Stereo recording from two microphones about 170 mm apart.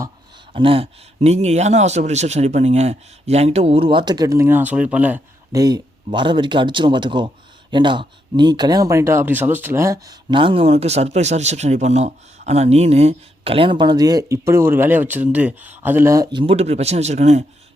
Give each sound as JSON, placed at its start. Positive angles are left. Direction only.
{"t": 0.5, "sound": "speech", "side_deg": -30}
{"t": 5.5, "sound": "speech", "side_deg": -20}